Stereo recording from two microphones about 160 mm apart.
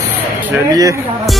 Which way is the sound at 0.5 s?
20° right (ahead or behind).